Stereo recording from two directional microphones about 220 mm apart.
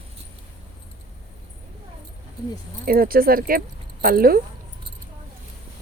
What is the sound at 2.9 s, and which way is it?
Speech, 40° right (ahead or behind).